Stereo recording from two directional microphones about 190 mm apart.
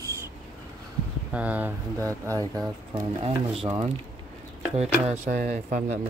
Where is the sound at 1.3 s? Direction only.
10° right (ahead or behind).